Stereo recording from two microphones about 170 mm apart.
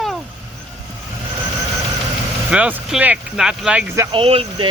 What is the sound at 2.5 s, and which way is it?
Speech, 5° right (ahead or behind).